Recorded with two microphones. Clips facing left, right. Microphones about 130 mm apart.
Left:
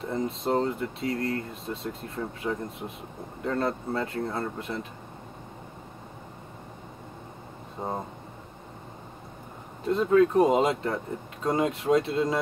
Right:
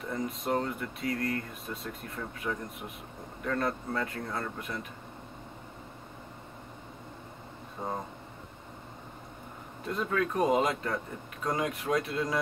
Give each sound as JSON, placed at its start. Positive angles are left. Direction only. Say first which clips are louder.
{"t": 0.0, "sound": "speech", "louder": "left 5 dB", "side_deg": 25}
{"t": 7.8, "sound": "speech", "louder": "left 3 dB", "side_deg": 25}
{"t": 9.8, "sound": "speech", "louder": "left 10 dB", "side_deg": 25}